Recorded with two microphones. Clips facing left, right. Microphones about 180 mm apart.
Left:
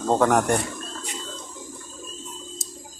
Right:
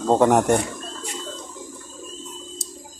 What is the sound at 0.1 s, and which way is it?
Speech, 20° right (ahead or behind).